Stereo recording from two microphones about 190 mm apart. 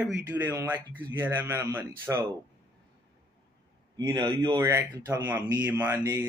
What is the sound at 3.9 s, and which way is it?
A man's voice, 20° right (ahead or behind).